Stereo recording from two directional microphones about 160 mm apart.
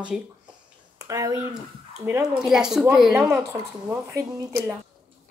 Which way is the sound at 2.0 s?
20° right (ahead or behind).